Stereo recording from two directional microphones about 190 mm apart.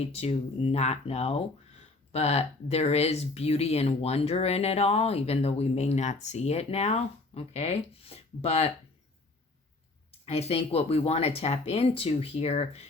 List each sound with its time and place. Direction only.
0.0 s speech: 35° left (ahead or behind)
10.2 s speech: 35° left (ahead or behind)